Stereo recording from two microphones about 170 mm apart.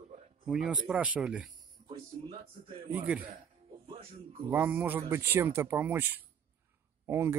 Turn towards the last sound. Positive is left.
turn(degrees=-15)  # may be behind; listen again after turning